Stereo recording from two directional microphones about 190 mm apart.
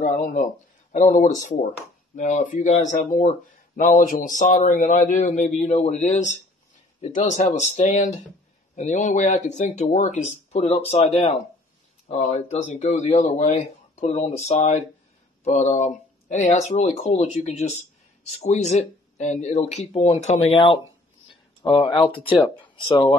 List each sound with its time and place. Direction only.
0.0 s speech: 40° left (ahead or behind); by 23.1 s 25° left (ahead or behind)